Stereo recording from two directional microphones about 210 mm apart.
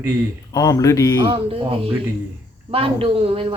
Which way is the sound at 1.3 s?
25° right (ahead or behind).